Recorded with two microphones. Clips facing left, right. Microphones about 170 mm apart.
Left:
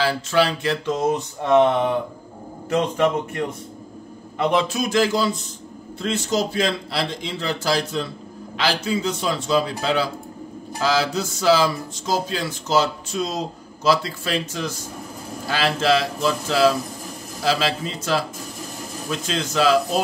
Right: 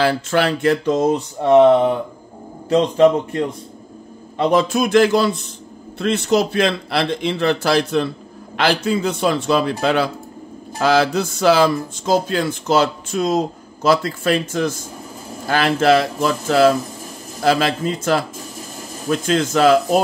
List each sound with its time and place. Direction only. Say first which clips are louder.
0.0 s speech: right 3 dB; 55° right (ahead or behind)
2.7 s a man's voice: right 7 dB; 30° right (ahead or behind)
4.4 s speech: right 4 dB; 45° right (ahead or behind)